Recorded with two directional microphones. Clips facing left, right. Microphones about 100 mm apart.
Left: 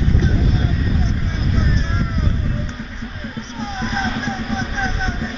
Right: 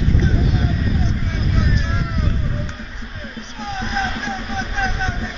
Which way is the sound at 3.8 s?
Centre (ahead or behind).